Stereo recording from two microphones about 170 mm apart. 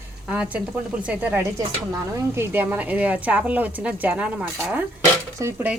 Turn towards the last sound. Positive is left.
turn(degrees=-15)  # may be behind; listen again after turning